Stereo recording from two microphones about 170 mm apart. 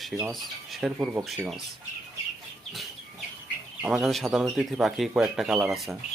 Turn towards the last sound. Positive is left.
turn(degrees=-5)  # may be behind; listen again after turning